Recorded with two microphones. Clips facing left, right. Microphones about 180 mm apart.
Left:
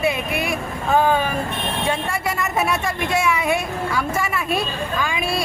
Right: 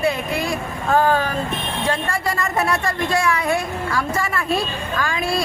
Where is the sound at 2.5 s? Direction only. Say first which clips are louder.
Even; 5° left (ahead or behind).